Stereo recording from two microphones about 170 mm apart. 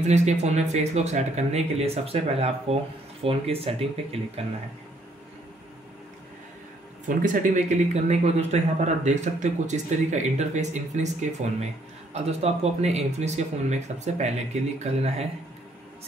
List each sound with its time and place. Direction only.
0.0 s speech: 40° right (ahead or behind)
7.2 s speech: 50° right (ahead or behind)